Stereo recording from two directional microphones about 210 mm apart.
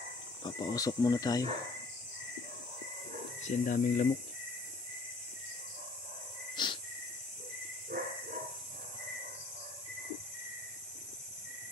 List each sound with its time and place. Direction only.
0.4 s speech: 20° left (ahead or behind)
3.4 s speech: 40° left (ahead or behind)
6.5 s cricket: 20° left (ahead or behind)
7.9 s dog: 45° right (ahead or behind)